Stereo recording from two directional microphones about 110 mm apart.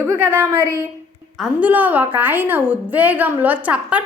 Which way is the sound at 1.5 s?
15° right (ahead or behind).